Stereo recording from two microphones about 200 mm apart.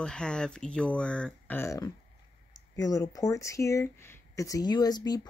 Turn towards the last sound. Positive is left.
turn(degrees=20)  # may be behind; listen again after turning